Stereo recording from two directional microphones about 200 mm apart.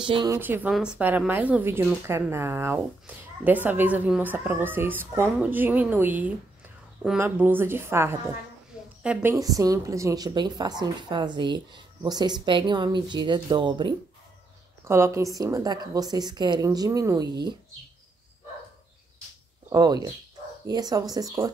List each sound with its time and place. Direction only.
0.0 s a woman's voice: 25° right (ahead or behind)
0.4 s a woman's voice: 10° right (ahead or behind)
14.9 s a woman's voice: 15° right (ahead or behind)
19.7 s a woman's voice: 20° right (ahead or behind)